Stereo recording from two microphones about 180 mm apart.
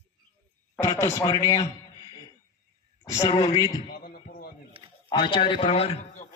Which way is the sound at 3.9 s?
55° left (ahead or behind).